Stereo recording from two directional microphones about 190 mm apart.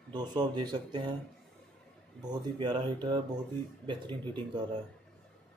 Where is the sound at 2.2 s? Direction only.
20° right (ahead or behind).